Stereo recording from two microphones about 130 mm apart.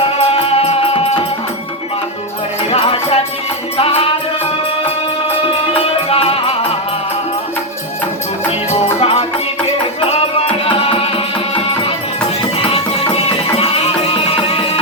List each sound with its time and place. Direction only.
0.2 s music: 45° left (ahead or behind)
2.6 s music: 45° left (ahead or behind)
5.8 s music: 45° left (ahead or behind)
9.0 s music: 50° left (ahead or behind)
13.6 s music: 50° left (ahead or behind)